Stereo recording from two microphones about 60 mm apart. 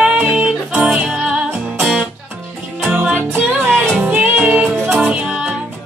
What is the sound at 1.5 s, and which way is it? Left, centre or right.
Music, right.